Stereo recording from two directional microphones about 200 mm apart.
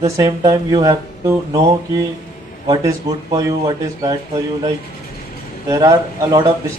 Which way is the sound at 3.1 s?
15° right (ahead or behind).